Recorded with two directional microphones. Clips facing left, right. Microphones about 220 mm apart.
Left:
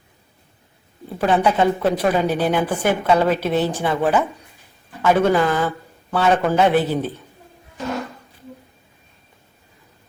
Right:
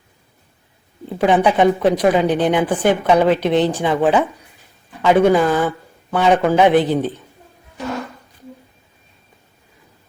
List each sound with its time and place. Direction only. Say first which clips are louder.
1.2 s speech: right 3 dB; 15° right (ahead or behind)